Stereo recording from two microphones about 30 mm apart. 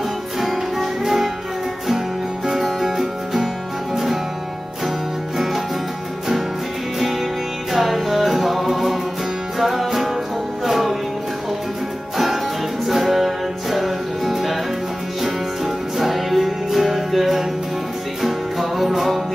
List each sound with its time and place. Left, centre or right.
0.4 s music: centre
2.4 s music: centre
7.7 s music: centre
12.8 s music: centre